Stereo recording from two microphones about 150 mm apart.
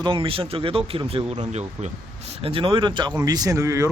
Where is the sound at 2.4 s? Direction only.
35° right (ahead or behind); by 3.9 s 20° right (ahead or behind).